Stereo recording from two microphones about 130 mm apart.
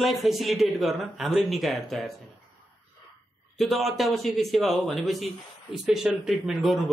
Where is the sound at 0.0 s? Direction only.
Centre (ahead or behind).